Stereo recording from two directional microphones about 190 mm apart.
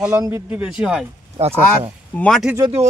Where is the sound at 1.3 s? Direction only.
30° right (ahead or behind).